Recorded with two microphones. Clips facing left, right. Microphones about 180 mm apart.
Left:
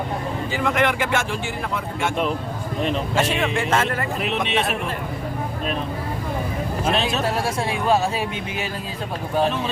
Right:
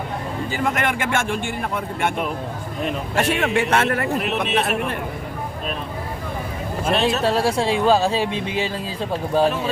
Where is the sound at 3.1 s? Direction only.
65° right (ahead or behind).